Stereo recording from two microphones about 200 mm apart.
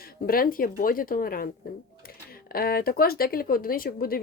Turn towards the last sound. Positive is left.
turn(degrees=50)  # may be behind; listen again after turning